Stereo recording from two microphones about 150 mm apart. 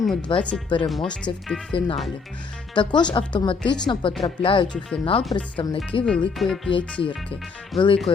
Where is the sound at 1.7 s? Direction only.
35° left (ahead or behind).